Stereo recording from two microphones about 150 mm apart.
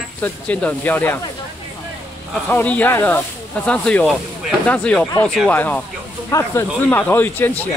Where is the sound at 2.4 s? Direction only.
10° left (ahead or behind).